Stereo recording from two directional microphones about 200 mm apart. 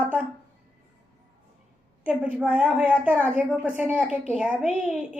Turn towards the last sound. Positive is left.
turn(degrees=-5)  # may be behind; listen again after turning